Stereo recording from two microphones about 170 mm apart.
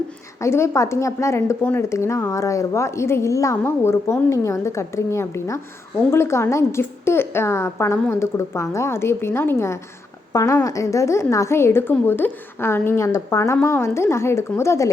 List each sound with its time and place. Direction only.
0.4 s a woman's voice: 15° left (ahead or behind)